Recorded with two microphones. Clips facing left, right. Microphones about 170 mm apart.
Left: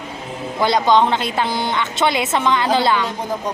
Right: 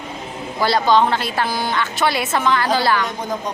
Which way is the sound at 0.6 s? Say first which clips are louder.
Left 1 dB; 20° left (ahead or behind).